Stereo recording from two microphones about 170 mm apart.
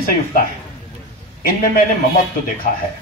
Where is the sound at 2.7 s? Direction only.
50° left (ahead or behind).